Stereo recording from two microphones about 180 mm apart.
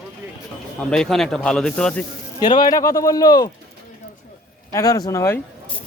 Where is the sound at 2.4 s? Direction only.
25° left (ahead or behind).